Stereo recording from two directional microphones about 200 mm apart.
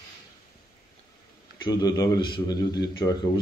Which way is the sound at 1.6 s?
20° left (ahead or behind).